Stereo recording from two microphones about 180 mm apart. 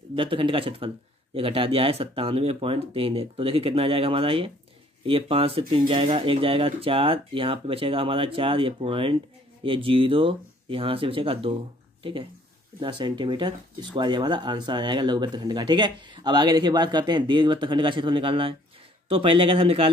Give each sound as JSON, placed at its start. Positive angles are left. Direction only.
{"t": 0.1, "sound": "speech", "side_deg": -30}